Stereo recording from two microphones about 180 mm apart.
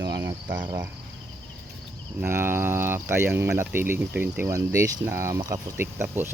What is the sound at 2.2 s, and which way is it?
Speech, 15° right (ahead or behind).